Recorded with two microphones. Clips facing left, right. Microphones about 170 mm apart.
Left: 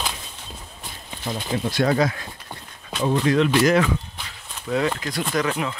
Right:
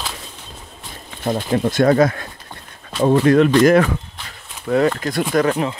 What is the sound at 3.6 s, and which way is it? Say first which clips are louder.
Walk: right 5 dB; 50° right (ahead or behind).